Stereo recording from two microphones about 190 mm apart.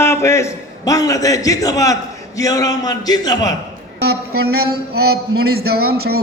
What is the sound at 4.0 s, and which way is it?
Speech, 55° right (ahead or behind).